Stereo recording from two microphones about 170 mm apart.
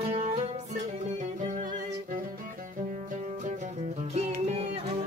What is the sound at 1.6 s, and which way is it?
Music, 55° right (ahead or behind).